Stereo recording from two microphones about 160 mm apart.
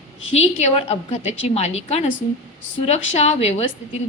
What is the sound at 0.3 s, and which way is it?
A woman's voice, 40° left (ahead or behind).